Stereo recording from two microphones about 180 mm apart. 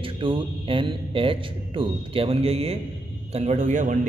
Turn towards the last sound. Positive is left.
turn(degrees=-45)  # may be behind; listen again after turning